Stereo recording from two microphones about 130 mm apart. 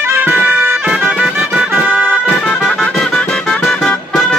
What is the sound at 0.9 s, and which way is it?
Music, 5° right (ahead or behind).